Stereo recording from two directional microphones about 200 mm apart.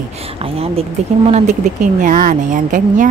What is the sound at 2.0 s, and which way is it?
A woman's voice, 45° right (ahead or behind).